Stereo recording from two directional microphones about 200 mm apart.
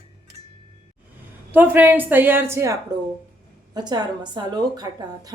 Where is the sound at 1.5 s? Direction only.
10° right (ahead or behind).